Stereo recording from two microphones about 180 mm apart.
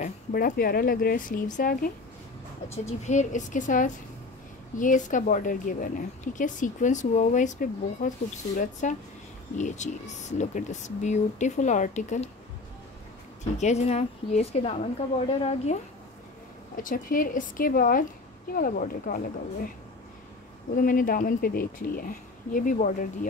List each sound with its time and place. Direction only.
0.0 s speech: 55° left (ahead or behind)
3.0 s speech: 40° left (ahead or behind)
13.4 s speech: 40° left (ahead or behind)
16.7 s speech: 50° left (ahead or behind)
20.7 s speech: 50° left (ahead or behind)